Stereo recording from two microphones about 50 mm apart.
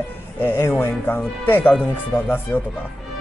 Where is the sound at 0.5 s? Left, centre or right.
Left.